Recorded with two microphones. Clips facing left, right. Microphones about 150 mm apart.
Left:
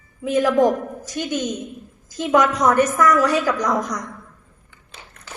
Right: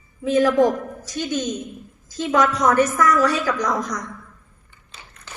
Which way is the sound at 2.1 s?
10° left (ahead or behind).